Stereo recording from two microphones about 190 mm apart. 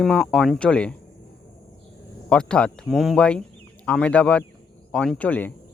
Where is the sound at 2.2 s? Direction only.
5° left (ahead or behind).